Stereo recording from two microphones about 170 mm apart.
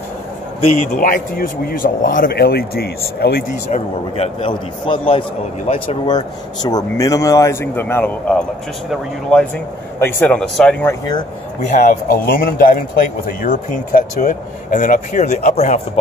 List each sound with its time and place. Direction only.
0.6 s a man's voice: 35° left (ahead or behind)
0.9 s speech: 55° left (ahead or behind)
3.7 s a man's voice: 35° left (ahead or behind); by 8.5 s 10° left (ahead or behind)
9.9 s a man's voice: 15° left (ahead or behind)
10.9 s speech: 25° left (ahead or behind)
11.8 s speech: 55° left (ahead or behind)